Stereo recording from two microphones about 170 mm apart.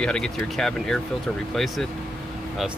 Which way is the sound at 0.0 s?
5° left (ahead or behind).